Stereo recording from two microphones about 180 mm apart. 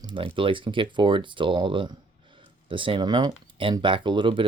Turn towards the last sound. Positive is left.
turn(degrees=-25)  # may be behind; listen again after turning